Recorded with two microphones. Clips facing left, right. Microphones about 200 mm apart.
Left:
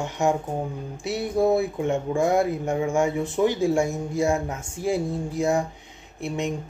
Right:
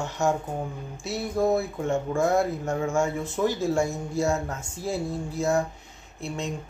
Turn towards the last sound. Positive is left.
turn(degrees=15)  # may be behind; listen again after turning